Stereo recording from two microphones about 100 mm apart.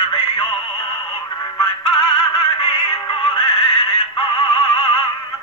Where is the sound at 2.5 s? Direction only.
70° left (ahead or behind).